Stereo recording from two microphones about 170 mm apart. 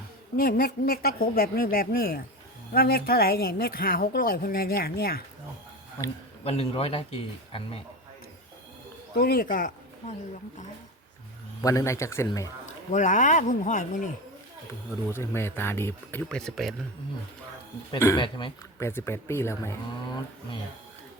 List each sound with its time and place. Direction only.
0.3 s speech: 55° left (ahead or behind)
6.4 s speech: 35° left (ahead or behind)
9.1 s speech: 65° left (ahead or behind)
11.6 s speech: 20° left (ahead or behind)
12.9 s speech: 50° left (ahead or behind)
15.1 s speech: 15° left (ahead or behind)
17.9 s a man's voice: 20° left (ahead or behind)
18.8 s speech: 15° left (ahead or behind)